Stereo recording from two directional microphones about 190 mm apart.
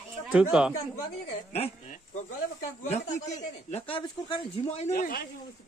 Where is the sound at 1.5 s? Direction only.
35° left (ahead or behind).